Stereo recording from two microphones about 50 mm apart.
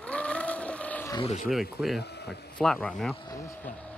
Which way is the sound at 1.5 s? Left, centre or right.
Centre.